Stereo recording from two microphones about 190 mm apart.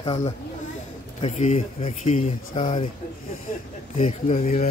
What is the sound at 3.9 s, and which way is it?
Speech, 45° left (ahead or behind).